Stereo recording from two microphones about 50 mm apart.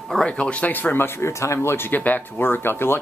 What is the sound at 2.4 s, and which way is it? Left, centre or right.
Speech, left.